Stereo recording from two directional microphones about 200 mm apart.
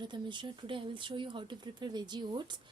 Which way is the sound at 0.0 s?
25° right (ahead or behind).